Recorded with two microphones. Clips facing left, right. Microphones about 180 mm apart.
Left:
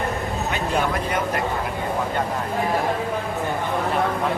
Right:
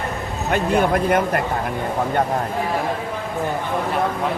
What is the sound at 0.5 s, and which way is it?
Speech, 50° right (ahead or behind).